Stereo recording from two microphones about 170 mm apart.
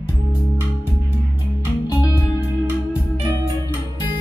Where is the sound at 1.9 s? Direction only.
20° left (ahead or behind).